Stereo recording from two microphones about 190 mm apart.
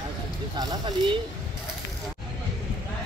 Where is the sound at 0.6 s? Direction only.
20° right (ahead or behind).